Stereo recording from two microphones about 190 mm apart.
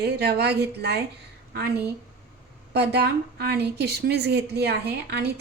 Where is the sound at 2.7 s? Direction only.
60° right (ahead or behind).